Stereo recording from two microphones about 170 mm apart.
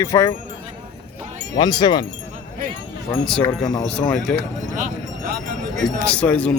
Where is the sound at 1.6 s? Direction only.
25° left (ahead or behind).